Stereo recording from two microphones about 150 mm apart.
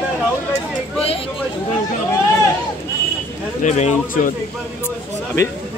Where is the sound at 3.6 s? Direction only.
50° left (ahead or behind).